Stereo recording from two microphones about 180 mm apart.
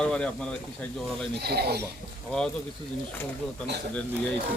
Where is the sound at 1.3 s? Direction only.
60° right (ahead or behind).